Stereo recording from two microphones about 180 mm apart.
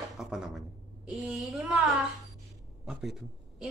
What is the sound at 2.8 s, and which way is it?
Speech, centre (ahead or behind).